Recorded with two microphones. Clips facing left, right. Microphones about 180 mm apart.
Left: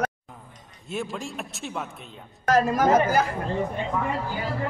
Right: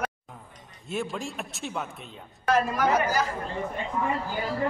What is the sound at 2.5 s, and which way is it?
Speech, 40° left (ahead or behind).